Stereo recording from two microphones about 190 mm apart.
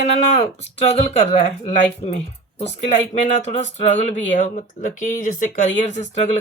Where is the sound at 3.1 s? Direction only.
35° left (ahead or behind).